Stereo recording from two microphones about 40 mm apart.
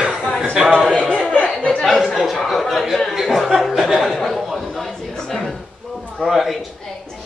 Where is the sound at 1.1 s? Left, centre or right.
Centre.